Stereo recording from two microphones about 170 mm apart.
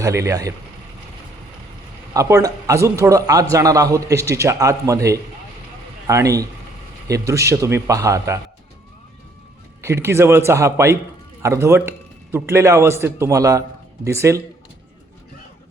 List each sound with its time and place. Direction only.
0.0 s a man's voice: 20° right (ahead or behind)
2.1 s a man's voice: 20° right (ahead or behind)
9.8 s a man's voice: 15° right (ahead or behind)